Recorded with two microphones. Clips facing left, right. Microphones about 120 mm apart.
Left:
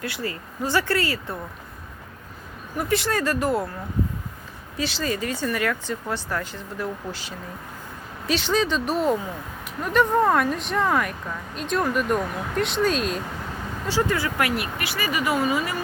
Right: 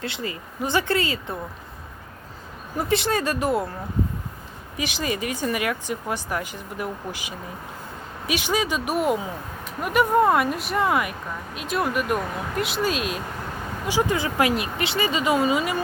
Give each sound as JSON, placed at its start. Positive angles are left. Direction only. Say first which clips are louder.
{"t": 0.0, "sound": "speech", "louder": "left 1 dB", "side_deg": -20}
{"t": 2.7, "sound": "speech", "louder": "right 1 dB", "side_deg": -20}
{"t": 4.8, "sound": "speech", "louder": "left 1 dB", "side_deg": -15}
{"t": 13.8, "sound": "speech", "louder": "right 1 dB", "side_deg": -15}